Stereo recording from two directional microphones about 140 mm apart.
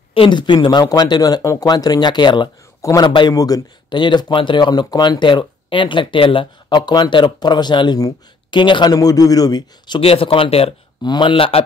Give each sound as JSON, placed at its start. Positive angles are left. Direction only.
{"t": 0.1, "sound": "speech", "side_deg": 35}
{"t": 2.8, "sound": "a man's voice", "side_deg": 20}